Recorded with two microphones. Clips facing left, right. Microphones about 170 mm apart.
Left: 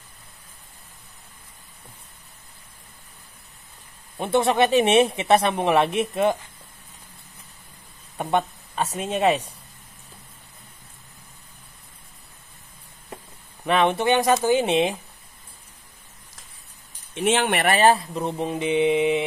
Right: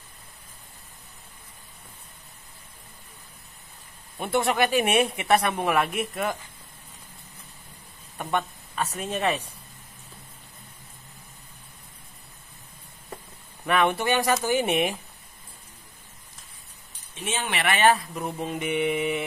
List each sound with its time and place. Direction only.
4.2 s speech: 20° left (ahead or behind)
8.3 s speech: 30° left (ahead or behind)
13.7 s speech: 25° left (ahead or behind)
17.1 s speech: 80° left
17.5 s speech: 45° left (ahead or behind); by 19.2 s 20° left (ahead or behind)